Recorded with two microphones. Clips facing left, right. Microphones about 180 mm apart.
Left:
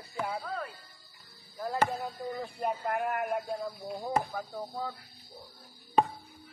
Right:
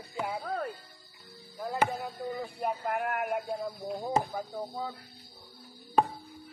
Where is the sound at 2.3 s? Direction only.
Centre (ahead or behind).